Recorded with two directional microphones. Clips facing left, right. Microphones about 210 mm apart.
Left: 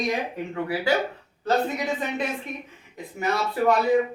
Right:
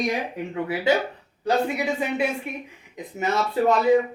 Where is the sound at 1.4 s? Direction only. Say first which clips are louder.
Right 1 dB; 10° right (ahead or behind).